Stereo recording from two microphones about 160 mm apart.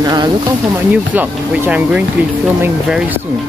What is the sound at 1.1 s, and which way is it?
Speech, 10° right (ahead or behind).